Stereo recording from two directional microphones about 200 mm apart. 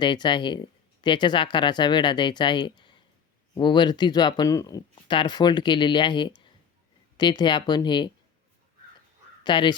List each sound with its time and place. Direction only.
0.0 s speech: 20° left (ahead or behind)
9.4 s speech: 20° left (ahead or behind)